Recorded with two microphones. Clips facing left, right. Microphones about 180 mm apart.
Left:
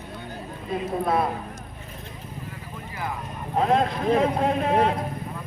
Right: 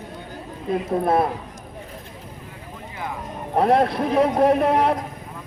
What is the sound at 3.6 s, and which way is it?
Speech, 70° right (ahead or behind).